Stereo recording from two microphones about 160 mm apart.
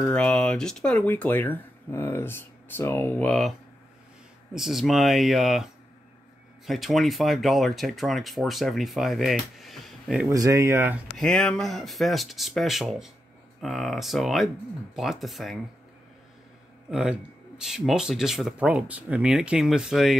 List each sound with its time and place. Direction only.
0.0 s speech: 5° left (ahead or behind)
4.6 s speech: centre (ahead or behind)
10.2 s speech: 20° right (ahead or behind)
11.1 s speech: 5° left (ahead or behind)
16.9 s speech: 5° right (ahead or behind)